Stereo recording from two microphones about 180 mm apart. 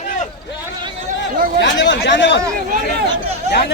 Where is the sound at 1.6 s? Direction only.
75° left (ahead or behind).